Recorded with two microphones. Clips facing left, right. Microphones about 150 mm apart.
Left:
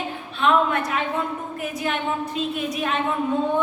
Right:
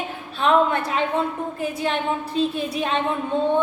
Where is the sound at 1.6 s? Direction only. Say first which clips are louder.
Right 2 dB; 30° right (ahead or behind).